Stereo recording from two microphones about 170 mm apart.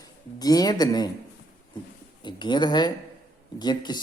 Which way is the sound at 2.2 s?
25° left (ahead or behind).